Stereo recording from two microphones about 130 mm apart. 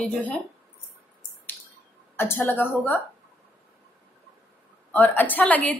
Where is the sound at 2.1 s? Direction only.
15° left (ahead or behind).